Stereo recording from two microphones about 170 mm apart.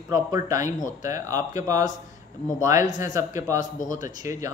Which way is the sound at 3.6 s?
50° left (ahead or behind).